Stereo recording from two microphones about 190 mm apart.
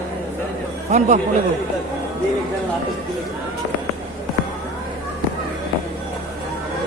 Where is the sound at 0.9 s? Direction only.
35° right (ahead or behind).